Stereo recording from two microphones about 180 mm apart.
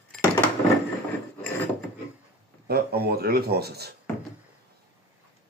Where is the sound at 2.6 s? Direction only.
60° right (ahead or behind).